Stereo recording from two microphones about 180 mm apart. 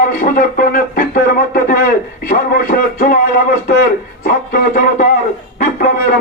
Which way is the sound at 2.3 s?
55° left (ahead or behind).